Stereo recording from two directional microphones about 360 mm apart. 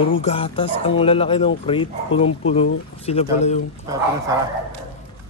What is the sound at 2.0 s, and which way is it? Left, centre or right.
Speech, left.